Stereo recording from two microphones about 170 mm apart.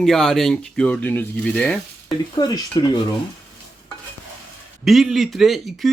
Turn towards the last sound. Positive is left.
turn(degrees=0)  # may be behind; listen again after turning